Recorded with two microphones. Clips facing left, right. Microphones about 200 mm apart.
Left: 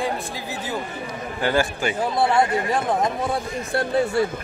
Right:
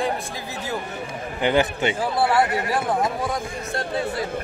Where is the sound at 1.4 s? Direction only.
20° right (ahead or behind).